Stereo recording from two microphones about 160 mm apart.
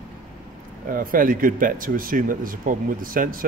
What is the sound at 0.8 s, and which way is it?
Speech, 60° right (ahead or behind).